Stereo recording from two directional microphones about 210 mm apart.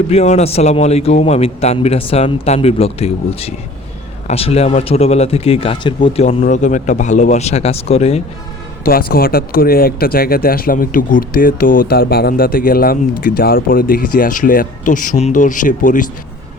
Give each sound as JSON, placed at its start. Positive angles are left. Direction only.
{"t": 0.1, "sound": "a man's voice", "side_deg": 30}
{"t": 6.4, "sound": "speech", "side_deg": 35}
{"t": 8.8, "sound": "speech", "side_deg": 45}